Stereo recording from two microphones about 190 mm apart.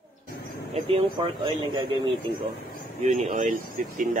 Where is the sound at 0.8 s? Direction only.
30° right (ahead or behind).